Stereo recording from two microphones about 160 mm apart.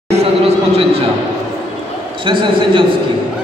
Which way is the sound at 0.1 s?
40° right (ahead or behind).